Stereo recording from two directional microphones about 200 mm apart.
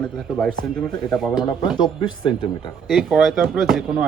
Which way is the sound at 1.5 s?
25° left (ahead or behind).